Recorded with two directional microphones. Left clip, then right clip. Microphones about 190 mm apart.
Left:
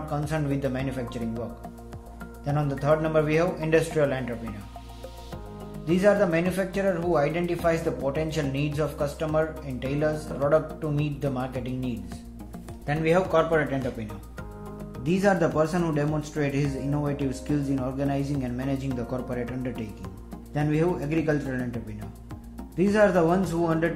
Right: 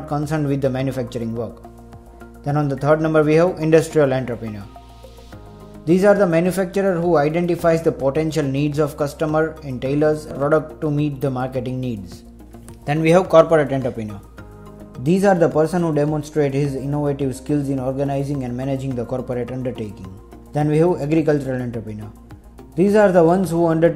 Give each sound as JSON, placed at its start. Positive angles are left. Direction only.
{"t": 0.1, "sound": "speech", "side_deg": -40}
{"t": 2.4, "sound": "speech", "side_deg": -40}
{"t": 5.9, "sound": "speech", "side_deg": -45}
{"t": 15.0, "sound": "a man's voice", "side_deg": -30}
{"t": 22.8, "sound": "a man's voice", "side_deg": -35}